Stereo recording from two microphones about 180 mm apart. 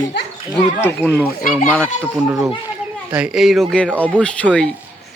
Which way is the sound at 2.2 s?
15° right (ahead or behind).